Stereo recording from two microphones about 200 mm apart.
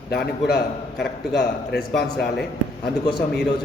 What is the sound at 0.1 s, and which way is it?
A man's voice, 55° left (ahead or behind).